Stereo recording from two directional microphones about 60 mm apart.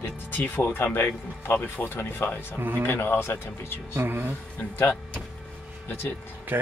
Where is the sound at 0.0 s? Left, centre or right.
Left.